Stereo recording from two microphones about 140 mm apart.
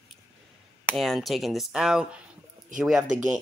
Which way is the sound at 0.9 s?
Centre (ahead or behind).